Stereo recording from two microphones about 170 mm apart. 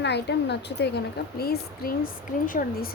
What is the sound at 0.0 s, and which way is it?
Speech, 85° left.